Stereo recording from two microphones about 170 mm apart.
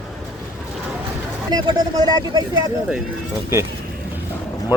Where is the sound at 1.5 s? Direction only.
25° right (ahead or behind).